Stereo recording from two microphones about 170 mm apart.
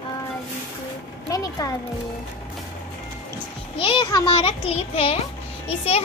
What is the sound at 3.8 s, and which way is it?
A child's voice, 30° left (ahead or behind).